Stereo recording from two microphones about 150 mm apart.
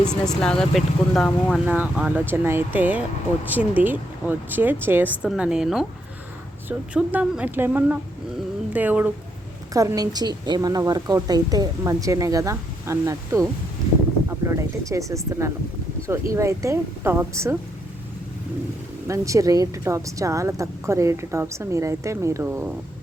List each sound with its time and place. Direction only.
0.0 s speech: 5° left (ahead or behind)
1.6 s speech: 10° right (ahead or behind)
9.7 s a woman's voice: 25° right (ahead or behind)
19.0 s a woman's voice: 20° right (ahead or behind)